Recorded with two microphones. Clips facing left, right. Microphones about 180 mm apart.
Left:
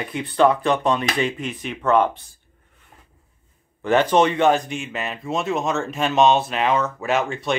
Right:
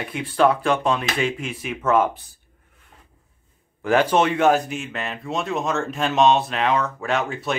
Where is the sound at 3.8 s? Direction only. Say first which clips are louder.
Left 1 dB; 5° right (ahead or behind).